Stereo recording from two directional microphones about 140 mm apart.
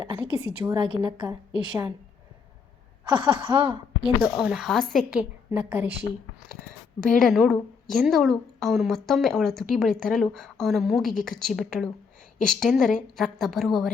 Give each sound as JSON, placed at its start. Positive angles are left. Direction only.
{"t": 0.0, "sound": "a woman's voice", "side_deg": -30}
{"t": 3.1, "sound": "a woman's voice", "side_deg": -35}
{"t": 4.0, "sound": "a woman's voice", "side_deg": -5}
{"t": 5.5, "sound": "a woman's voice", "side_deg": -15}
{"t": 7.1, "sound": "a woman's voice", "side_deg": 0}